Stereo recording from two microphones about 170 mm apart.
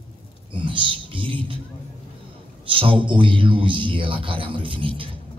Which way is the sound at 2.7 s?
30° right (ahead or behind).